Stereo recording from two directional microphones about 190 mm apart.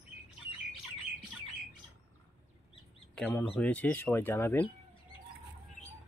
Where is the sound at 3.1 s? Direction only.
10° left (ahead or behind).